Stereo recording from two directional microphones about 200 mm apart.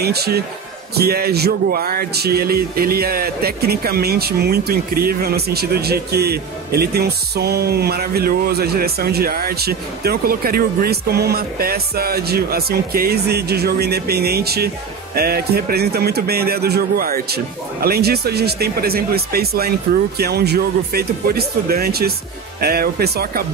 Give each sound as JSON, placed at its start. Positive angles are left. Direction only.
{"t": 0.0, "sound": "speech", "side_deg": -55}